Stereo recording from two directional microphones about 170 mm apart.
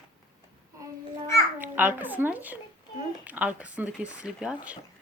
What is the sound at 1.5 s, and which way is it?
Speech, 10° right (ahead or behind).